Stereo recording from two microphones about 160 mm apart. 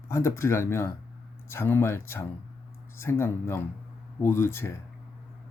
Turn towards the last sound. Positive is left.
turn(degrees=15)  # may be behind; listen again after turning